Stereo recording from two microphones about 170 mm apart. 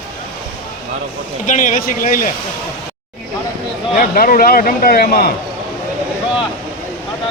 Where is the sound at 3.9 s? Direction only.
60° left (ahead or behind).